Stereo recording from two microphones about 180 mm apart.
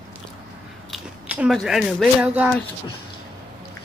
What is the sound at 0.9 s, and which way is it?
Speech, 5° right (ahead or behind).